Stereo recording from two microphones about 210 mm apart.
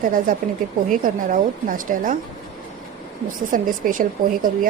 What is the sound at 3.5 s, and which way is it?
Speech, 40° right (ahead or behind).